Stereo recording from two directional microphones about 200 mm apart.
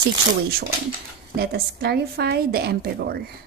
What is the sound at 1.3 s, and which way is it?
A woman's voice, 50° right (ahead or behind).